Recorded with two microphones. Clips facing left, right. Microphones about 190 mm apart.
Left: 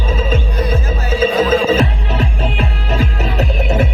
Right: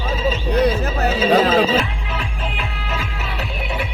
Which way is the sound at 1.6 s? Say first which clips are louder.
Left 5 dB; 45° left (ahead or behind).